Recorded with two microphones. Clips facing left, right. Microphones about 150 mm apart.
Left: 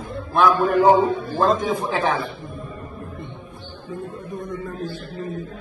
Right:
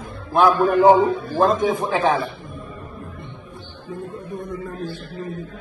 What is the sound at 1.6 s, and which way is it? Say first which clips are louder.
Speech: right 2 dB; 20° right (ahead or behind).